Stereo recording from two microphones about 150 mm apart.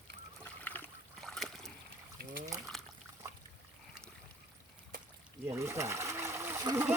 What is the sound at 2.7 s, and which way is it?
Trickle, centre (ahead or behind).